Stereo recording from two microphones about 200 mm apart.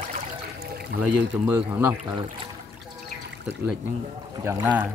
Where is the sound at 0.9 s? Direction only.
55° right (ahead or behind).